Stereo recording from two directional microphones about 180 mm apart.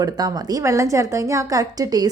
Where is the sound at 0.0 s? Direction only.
20° right (ahead or behind).